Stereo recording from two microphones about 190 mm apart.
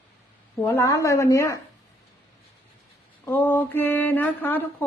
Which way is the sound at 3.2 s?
10° left (ahead or behind).